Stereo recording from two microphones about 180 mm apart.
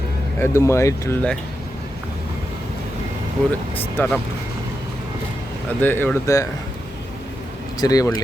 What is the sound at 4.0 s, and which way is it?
Speech, 10° left (ahead or behind).